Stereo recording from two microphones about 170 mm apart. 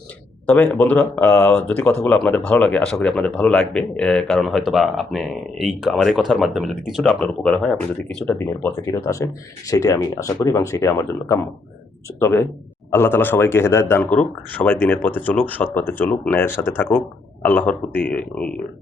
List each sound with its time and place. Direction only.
0.4 s speech: 10° left (ahead or behind)